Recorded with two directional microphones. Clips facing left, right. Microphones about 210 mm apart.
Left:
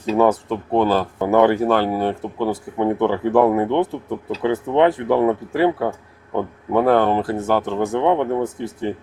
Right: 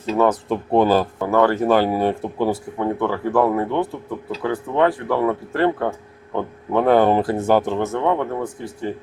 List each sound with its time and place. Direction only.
0.4 s speech: 10° right (ahead or behind)
1.2 s speech: 20° left (ahead or behind)
1.6 s speech: 10° right (ahead or behind)
2.7 s speech: 20° left (ahead or behind)
6.9 s speech: 10° right (ahead or behind)
7.8 s speech: 15° left (ahead or behind)